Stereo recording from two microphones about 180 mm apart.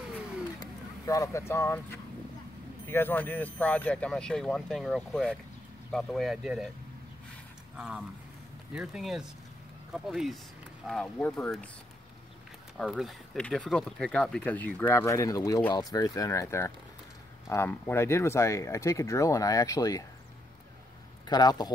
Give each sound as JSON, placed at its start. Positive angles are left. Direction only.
{"t": 0.6, "sound": "speech", "side_deg": 20}
{"t": 7.7, "sound": "speech", "side_deg": -5}
{"t": 12.7, "sound": "speech", "side_deg": 0}
{"t": 21.3, "sound": "speech", "side_deg": 20}